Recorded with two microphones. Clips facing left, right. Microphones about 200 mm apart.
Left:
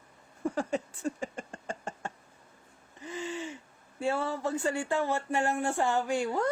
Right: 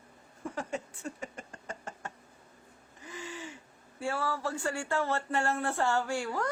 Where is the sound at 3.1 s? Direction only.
25° left (ahead or behind).